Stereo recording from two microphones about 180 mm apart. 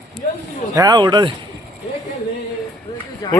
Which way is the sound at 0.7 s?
20° right (ahead or behind).